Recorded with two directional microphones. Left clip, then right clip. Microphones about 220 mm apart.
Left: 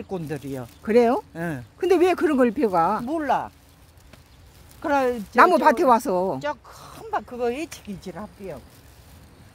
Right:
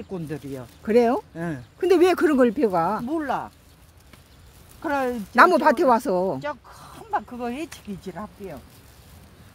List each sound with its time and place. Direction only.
0.1 s speech: 50° left (ahead or behind)
0.8 s speech: 5° right (ahead or behind)
1.3 s speech: 50° left (ahead or behind)
1.8 s speech: 10° right (ahead or behind)
3.1 s speech: 50° left (ahead or behind)
4.8 s speech: 45° left (ahead or behind)
5.3 s speech: 5° right (ahead or behind)
6.4 s speech: 45° left (ahead or behind)